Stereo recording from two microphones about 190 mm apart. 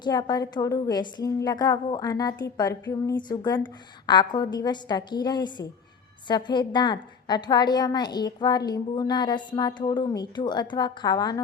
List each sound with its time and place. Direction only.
0.0 s a woman's voice: 20° left (ahead or behind)